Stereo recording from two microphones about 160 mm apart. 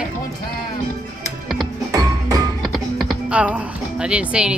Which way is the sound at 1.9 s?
20° right (ahead or behind).